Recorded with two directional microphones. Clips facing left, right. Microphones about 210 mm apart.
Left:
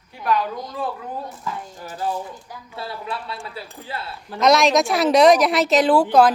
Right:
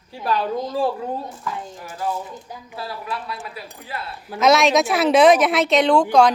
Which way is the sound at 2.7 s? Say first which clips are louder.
Even; 25° left (ahead or behind).